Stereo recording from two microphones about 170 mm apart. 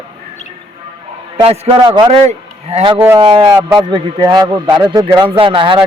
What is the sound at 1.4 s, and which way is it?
A man's voice, 30° right (ahead or behind).